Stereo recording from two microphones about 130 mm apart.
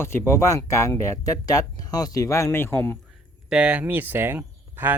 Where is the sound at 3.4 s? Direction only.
10° right (ahead or behind).